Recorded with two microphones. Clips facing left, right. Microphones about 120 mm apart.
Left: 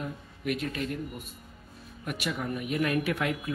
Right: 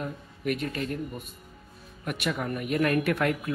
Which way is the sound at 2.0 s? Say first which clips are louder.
Right 3 dB; 50° right (ahead or behind).